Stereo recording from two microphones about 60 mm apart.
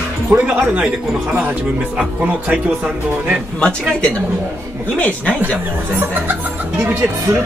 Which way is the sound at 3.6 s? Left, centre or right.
Centre.